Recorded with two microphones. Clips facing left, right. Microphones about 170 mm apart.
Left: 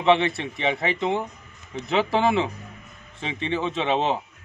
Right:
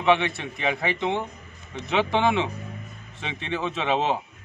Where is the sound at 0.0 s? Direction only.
30° left (ahead or behind).